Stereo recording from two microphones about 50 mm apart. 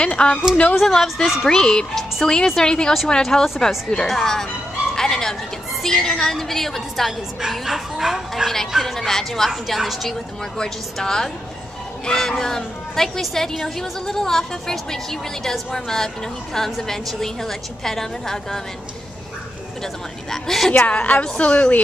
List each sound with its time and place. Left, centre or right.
0.0 s speech: centre
0.7 s a woman's voice: centre
1.5 s a woman's voice: centre
4.9 s music: centre
5.8 s a woman's voice: centre
8.5 s a woman's voice: centre
9.5 s a woman's voice: centre
10.6 s a woman's voice: centre
19.8 s a woman's voice: centre
20.8 s a woman's voice: left